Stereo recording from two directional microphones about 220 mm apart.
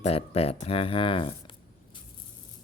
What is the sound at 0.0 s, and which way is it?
Speech, 25° left (ahead or behind).